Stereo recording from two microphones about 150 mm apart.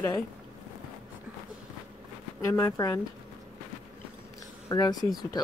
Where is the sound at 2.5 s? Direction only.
20° left (ahead or behind).